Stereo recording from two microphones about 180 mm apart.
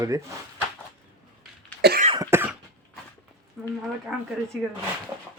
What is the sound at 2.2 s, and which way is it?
Cough, 15° right (ahead or behind).